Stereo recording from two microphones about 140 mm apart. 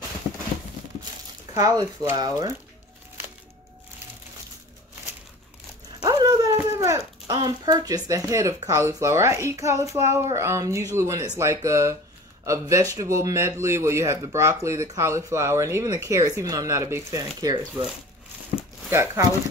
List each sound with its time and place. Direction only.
1.5 s speech: 25° right (ahead or behind)
6.0 s speech: 25° right (ahead or behind)
18.9 s speech: 20° right (ahead or behind)